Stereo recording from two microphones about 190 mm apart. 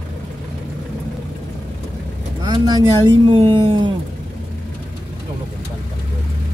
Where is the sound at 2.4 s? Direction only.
20° right (ahead or behind).